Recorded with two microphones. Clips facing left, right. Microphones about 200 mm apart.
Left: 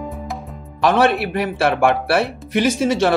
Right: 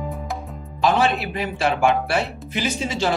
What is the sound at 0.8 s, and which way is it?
Speech, 70° left (ahead or behind).